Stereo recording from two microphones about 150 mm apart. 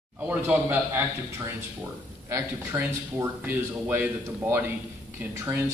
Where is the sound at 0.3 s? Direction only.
10° right (ahead or behind).